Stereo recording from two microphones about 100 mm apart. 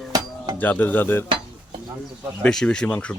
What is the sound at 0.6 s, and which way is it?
Speech, 20° left (ahead or behind).